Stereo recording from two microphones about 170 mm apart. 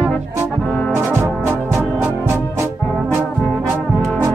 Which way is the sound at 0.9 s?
15° right (ahead or behind).